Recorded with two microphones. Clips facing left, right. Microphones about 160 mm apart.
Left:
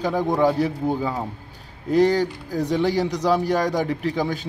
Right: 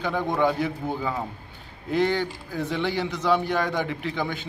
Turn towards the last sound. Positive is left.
turn(degrees=40)  # may be behind; listen again after turning